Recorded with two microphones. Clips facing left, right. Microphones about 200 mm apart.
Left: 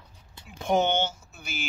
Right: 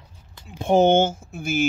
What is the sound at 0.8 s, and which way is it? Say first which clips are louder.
Speech: right 10 dB; 50° right (ahead or behind).